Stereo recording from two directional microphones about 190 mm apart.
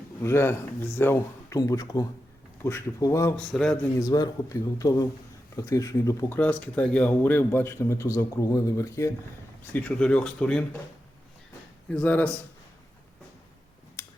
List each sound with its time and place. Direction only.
0.2 s speech: 15° left (ahead or behind)
3.5 s speech: 5° left (ahead or behind)
4.0 s a man's voice: 20° left (ahead or behind)
11.9 s speech: 5° left (ahead or behind)